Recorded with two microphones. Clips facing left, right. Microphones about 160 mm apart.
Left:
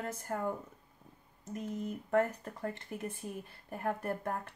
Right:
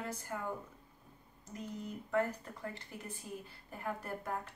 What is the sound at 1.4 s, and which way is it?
Speech, 50° left (ahead or behind).